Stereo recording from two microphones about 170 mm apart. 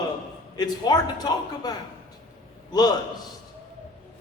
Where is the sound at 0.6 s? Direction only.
25° left (ahead or behind).